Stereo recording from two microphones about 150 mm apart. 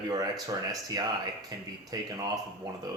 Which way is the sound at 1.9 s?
25° right (ahead or behind).